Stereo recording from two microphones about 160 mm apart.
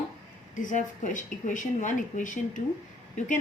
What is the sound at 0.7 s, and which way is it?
A woman's voice, 55° left (ahead or behind).